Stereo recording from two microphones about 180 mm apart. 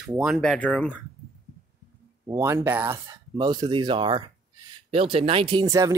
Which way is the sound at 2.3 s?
15° right (ahead or behind).